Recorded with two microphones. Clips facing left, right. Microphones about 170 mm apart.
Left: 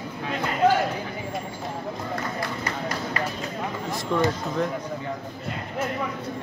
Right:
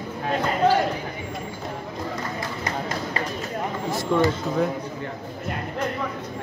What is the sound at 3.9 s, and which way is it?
Speech, centre (ahead or behind).